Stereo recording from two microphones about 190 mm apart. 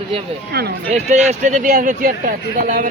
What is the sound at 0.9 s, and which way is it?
Speech, 35° right (ahead or behind).